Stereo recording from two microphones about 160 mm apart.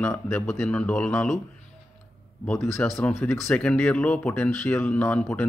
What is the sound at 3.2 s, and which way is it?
A man's voice, 5° left (ahead or behind).